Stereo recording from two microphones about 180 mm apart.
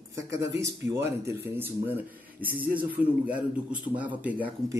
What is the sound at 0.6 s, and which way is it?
Speech, 15° right (ahead or behind).